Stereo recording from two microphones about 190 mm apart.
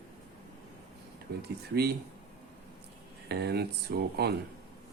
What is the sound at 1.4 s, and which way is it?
Speech, 60° right (ahead or behind).